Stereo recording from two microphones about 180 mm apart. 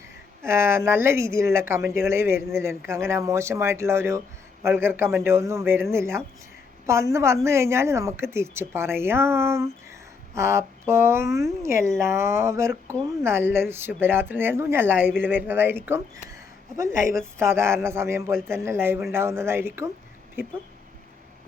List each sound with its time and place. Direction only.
0.4 s speech: 15° right (ahead or behind)
17.3 s speech: 15° right (ahead or behind)